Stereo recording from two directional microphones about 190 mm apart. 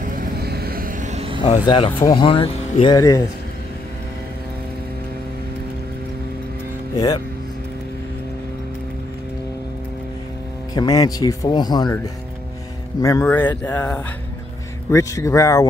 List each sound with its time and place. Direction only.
0.0 s vehicle: 50° right (ahead or behind); by 1.4 s 35° right (ahead or behind)
1.4 s speech: 25° left (ahead or behind)
3.0 s speech: 15° left (ahead or behind)
10.7 s speech: 20° left (ahead or behind)
13.0 s speech: 15° left (ahead or behind)